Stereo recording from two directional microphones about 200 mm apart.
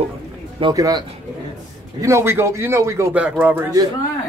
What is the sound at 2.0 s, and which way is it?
Speech, 15° right (ahead or behind).